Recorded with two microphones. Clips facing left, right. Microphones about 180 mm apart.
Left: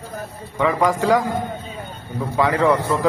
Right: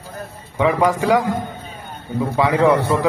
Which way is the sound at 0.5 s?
15° right (ahead or behind).